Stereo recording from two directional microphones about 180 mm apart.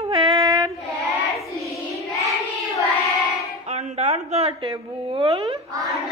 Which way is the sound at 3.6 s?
40° right (ahead or behind).